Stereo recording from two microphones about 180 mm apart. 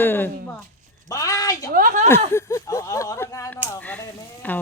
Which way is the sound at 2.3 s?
15° left (ahead or behind).